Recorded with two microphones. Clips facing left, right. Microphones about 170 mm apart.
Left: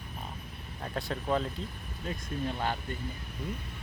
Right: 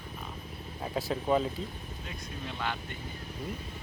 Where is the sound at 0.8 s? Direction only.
5° right (ahead or behind).